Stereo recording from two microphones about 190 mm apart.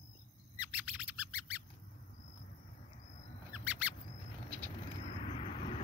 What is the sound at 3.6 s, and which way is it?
Bird, 5° right (ahead or behind).